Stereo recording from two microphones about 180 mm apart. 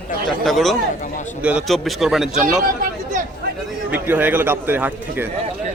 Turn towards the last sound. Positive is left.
turn(degrees=-10)  # may be behind; listen again after turning